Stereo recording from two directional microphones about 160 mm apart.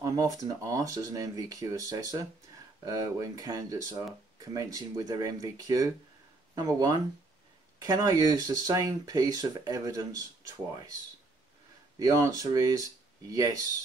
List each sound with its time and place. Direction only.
0.0 s speech: 20° right (ahead or behind)
12.0 s speech: 20° right (ahead or behind)